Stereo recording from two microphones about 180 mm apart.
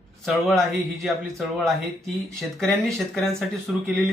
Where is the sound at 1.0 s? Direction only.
Centre (ahead or behind).